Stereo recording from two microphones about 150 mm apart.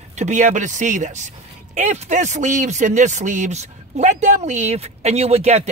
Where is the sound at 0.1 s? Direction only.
50° right (ahead or behind).